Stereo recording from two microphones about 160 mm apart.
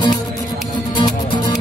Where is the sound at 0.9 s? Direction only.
30° left (ahead or behind).